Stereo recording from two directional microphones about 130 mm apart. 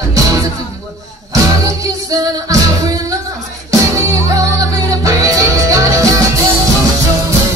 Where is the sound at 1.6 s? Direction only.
25° right (ahead or behind).